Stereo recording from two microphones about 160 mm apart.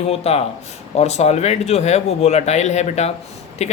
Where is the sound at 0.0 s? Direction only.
40° left (ahead or behind).